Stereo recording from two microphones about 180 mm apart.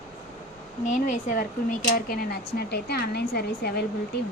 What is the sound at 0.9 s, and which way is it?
Speech, 45° left (ahead or behind).